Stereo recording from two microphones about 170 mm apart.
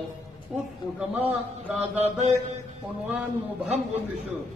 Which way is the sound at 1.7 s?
40° right (ahead or behind).